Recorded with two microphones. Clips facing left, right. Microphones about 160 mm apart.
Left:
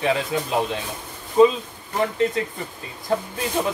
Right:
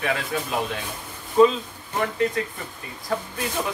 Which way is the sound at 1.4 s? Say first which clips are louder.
Left 1 dB; 20° left (ahead or behind).